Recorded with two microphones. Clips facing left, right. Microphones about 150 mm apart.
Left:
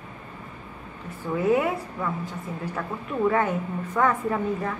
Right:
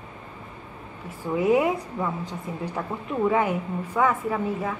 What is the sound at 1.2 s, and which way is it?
A woman's voice, 15° right (ahead or behind).